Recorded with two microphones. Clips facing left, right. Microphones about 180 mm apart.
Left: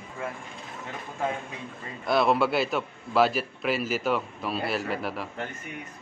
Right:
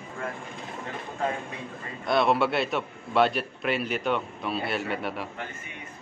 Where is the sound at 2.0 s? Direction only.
Centre (ahead or behind).